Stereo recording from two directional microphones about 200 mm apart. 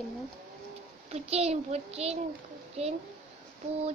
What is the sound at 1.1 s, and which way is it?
A child's voice, 30° right (ahead or behind).